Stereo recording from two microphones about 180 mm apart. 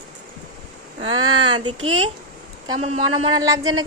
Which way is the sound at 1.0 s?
25° right (ahead or behind).